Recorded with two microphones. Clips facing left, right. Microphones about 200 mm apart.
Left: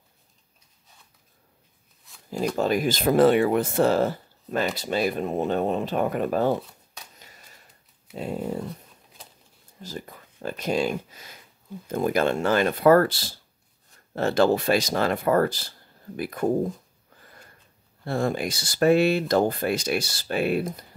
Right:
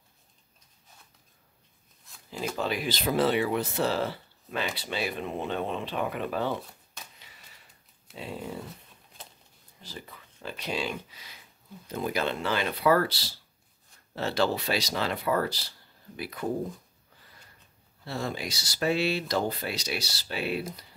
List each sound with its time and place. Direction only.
2.5 s speech: 45° left (ahead or behind)
7.2 s a sound: 45° left (ahead or behind)
8.1 s speech: 45° left (ahead or behind)
9.8 s speech: 45° left (ahead or behind)
17.2 s a sound: 50° left (ahead or behind)
18.0 s speech: 50° left (ahead or behind)